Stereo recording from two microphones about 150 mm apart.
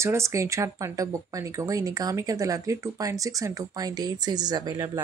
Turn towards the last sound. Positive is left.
turn(degrees=-25)  # may be behind; listen again after turning